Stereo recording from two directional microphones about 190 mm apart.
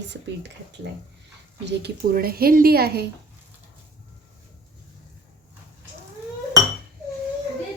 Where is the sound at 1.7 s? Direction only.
55° right (ahead or behind).